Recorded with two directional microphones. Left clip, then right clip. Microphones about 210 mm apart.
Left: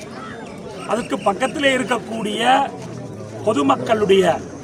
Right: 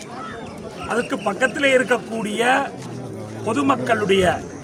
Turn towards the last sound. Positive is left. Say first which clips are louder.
# left 2 dB
turn(degrees=5)  # may be behind; listen again after turning